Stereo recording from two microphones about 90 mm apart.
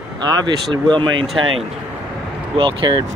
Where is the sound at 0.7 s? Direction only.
65° right (ahead or behind).